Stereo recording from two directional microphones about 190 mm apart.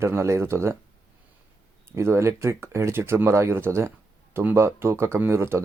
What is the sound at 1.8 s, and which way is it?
Speech, 15° right (ahead or behind).